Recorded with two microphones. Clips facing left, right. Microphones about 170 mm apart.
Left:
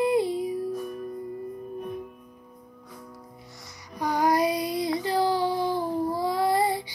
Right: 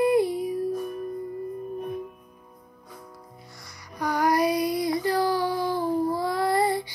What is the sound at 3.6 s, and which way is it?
Music, 20° left (ahead or behind).